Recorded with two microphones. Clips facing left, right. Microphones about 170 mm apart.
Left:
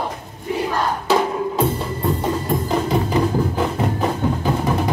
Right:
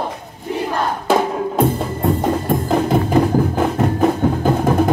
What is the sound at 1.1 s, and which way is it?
Music, 50° right (ahead or behind).